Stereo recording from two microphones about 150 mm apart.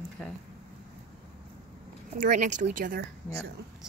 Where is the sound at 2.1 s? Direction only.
65° right (ahead or behind).